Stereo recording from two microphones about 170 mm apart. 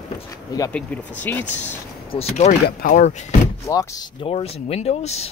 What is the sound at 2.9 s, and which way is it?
Speech, 40° left (ahead or behind).